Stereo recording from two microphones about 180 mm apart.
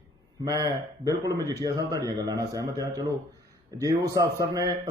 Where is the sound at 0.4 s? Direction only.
20° right (ahead or behind).